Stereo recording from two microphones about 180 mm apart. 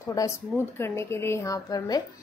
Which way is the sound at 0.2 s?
20° left (ahead or behind).